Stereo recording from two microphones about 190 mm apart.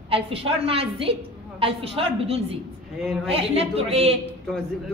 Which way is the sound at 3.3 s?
30° right (ahead or behind).